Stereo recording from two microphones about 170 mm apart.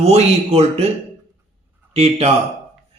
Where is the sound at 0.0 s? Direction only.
40° right (ahead or behind).